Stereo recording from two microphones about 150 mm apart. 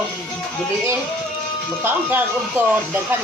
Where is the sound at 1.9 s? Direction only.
10° right (ahead or behind).